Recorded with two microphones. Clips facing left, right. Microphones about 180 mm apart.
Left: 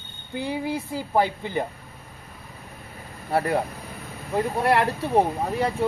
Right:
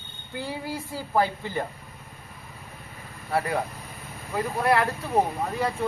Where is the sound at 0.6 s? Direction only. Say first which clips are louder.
Left 5 dB; 20° left (ahead or behind).